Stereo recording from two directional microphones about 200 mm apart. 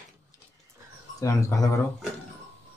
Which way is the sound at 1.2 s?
15° left (ahead or behind).